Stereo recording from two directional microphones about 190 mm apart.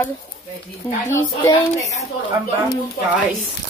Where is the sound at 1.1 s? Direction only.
15° left (ahead or behind).